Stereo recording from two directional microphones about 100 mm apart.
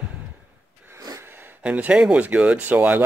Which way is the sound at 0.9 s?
35° right (ahead or behind).